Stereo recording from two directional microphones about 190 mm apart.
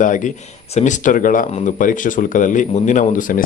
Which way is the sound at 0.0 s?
40° left (ahead or behind).